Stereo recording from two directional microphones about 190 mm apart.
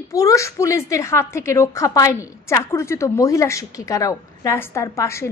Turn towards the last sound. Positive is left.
turn(degrees=15)  # may be behind; listen again after turning